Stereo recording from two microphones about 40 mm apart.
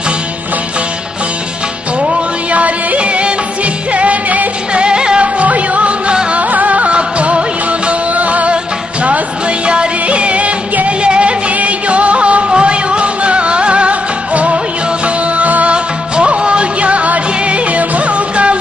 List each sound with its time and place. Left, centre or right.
2.5 s music: right
4.8 s music: right
5.2 s music: right
9.7 s music: right
15.7 s music: right